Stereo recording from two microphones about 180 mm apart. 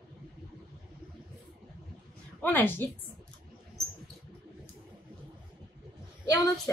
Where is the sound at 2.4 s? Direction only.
10° left (ahead or behind).